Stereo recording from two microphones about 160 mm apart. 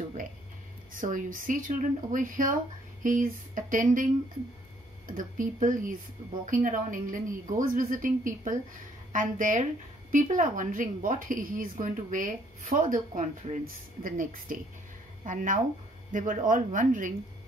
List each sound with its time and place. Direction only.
0.9 s a woman's voice: 55° right (ahead or behind)